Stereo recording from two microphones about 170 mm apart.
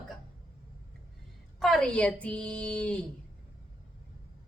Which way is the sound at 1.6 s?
Centre (ahead or behind).